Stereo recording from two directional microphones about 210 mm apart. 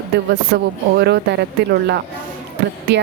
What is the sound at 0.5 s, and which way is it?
Speech, 55° right (ahead or behind).